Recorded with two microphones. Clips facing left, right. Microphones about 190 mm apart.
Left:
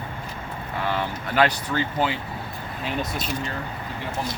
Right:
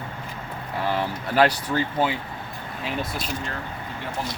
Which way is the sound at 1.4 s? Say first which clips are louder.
Right 2 dB; 35° right (ahead or behind).